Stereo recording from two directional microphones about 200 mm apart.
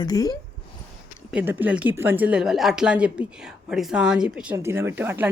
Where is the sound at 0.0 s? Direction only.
20° left (ahead or behind).